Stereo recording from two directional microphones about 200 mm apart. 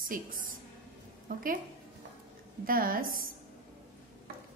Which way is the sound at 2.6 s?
45° right (ahead or behind).